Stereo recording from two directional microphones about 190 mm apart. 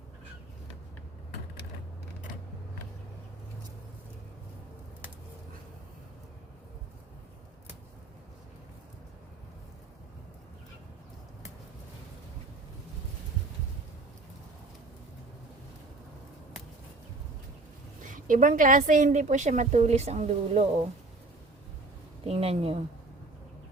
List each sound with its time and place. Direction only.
18.0 s a woman's voice: 45° right (ahead or behind)
22.2 s a woman's voice: 30° right (ahead or behind)